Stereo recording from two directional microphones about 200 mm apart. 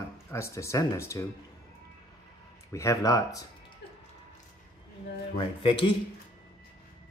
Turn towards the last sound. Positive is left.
turn(degrees=25)  # may be behind; listen again after turning